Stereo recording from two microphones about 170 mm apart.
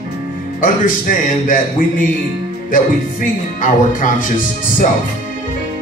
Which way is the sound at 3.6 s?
50° left (ahead or behind).